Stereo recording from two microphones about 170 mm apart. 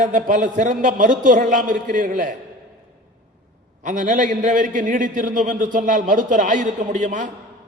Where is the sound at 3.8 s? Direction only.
50° right (ahead or behind).